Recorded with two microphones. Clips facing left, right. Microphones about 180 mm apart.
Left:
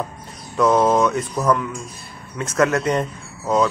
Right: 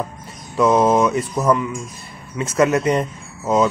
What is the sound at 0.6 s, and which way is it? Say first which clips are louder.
A man's voice: right 1 dB; centre (ahead or behind).